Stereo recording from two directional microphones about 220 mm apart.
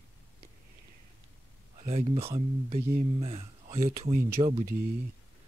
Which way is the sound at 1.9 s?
30° right (ahead or behind).